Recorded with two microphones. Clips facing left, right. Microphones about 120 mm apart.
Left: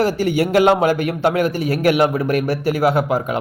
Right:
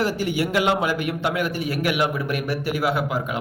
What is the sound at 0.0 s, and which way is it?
A man's voice, 40° left (ahead or behind).